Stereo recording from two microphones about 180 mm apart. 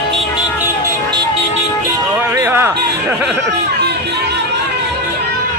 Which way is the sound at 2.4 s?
15° right (ahead or behind).